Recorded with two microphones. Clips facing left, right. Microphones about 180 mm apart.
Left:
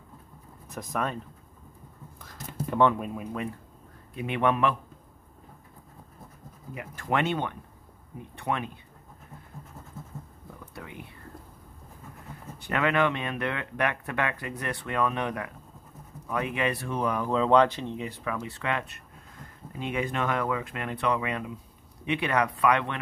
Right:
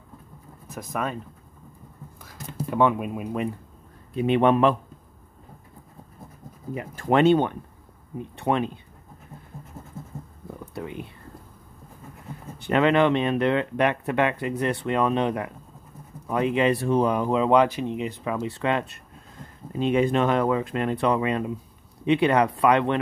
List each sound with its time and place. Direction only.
0.7 s speech: 5° right (ahead or behind)
2.2 s speech: 5° right (ahead or behind)
4.1 s speech: 30° right (ahead or behind)
6.7 s speech: 30° right (ahead or behind)
10.7 s a sound: 30° right (ahead or behind)
12.5 s speech: 25° right (ahead or behind)